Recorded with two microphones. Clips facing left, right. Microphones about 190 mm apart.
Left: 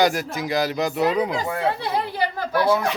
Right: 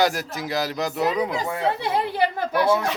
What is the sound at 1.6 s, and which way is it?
Speech, 20° right (ahead or behind).